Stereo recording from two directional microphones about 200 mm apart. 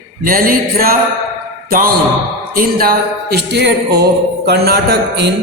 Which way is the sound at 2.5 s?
50° right (ahead or behind).